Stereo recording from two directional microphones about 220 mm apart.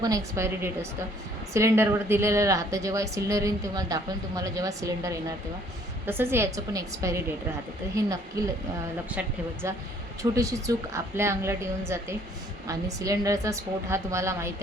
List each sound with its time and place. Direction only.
0.0 s a woman's voice: 15° right (ahead or behind)
9.6 s a woman's voice: 15° right (ahead or behind)